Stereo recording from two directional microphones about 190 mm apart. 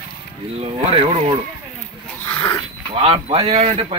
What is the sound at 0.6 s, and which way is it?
Speech, 30° right (ahead or behind).